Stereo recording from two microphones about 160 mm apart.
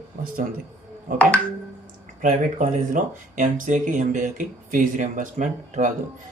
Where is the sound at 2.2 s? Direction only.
55° right (ahead or behind).